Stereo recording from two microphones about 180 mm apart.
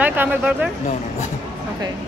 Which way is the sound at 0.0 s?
10° right (ahead or behind).